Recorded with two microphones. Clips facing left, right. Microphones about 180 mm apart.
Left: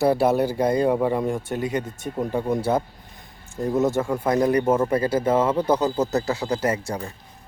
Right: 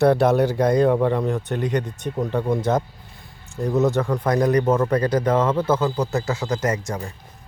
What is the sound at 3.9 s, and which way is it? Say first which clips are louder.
Speech: right 1 dB; 5° left (ahead or behind).